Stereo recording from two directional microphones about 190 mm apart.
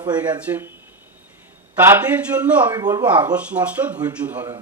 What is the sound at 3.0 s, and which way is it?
A man's voice, 10° right (ahead or behind).